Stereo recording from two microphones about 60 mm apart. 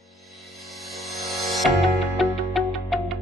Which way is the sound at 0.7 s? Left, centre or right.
Centre.